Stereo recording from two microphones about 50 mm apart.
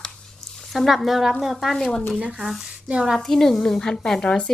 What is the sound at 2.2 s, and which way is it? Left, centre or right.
Speech, right.